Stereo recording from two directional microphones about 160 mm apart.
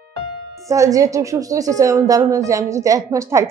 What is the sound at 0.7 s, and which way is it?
A woman's voice, 20° right (ahead or behind).